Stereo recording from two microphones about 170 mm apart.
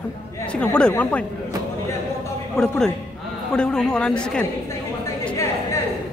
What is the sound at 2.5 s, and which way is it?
A woman's voice, 5° left (ahead or behind).